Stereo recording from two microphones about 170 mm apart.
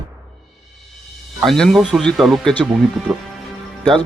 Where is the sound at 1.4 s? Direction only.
Centre (ahead or behind).